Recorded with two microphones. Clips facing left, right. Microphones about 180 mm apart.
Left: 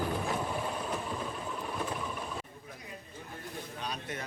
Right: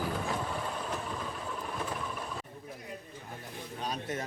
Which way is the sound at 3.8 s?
40° right (ahead or behind).